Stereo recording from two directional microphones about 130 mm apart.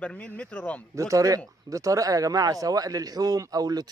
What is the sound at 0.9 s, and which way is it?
Speech, 25° right (ahead or behind).